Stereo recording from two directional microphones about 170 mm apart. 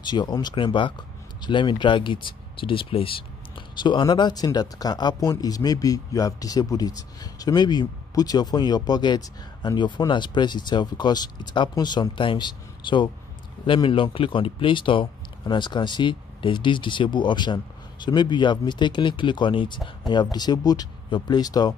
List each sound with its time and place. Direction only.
0.0 s speech: 25° left (ahead or behind)